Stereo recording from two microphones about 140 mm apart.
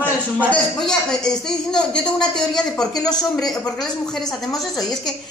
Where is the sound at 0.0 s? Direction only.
10° left (ahead or behind).